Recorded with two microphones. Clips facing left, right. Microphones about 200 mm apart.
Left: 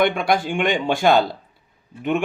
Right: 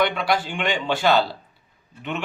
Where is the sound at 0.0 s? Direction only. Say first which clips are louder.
Left 3 dB; 50° left (ahead or behind).